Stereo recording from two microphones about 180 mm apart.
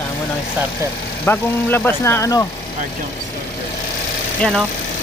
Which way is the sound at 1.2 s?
10° left (ahead or behind).